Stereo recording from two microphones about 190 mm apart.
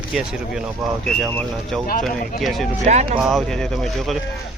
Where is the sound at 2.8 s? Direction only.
35° right (ahead or behind).